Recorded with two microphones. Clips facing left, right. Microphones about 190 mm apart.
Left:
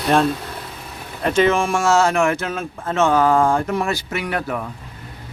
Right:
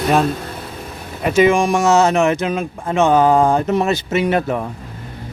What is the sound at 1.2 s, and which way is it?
Speech, 10° right (ahead or behind).